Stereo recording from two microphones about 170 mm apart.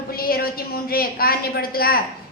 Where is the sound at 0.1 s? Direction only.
60° left (ahead or behind).